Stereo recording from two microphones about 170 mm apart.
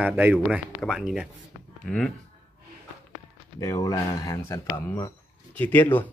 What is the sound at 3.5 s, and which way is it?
Speech, 20° left (ahead or behind).